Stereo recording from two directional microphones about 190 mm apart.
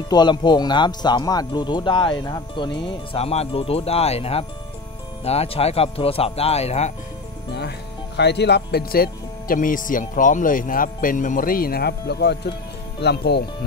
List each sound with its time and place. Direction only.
0.1 s speech: 25° left (ahead or behind)
8.2 s speech: 60° left (ahead or behind)